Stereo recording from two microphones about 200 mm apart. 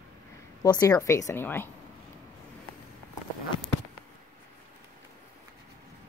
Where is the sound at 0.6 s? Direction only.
15° left (ahead or behind).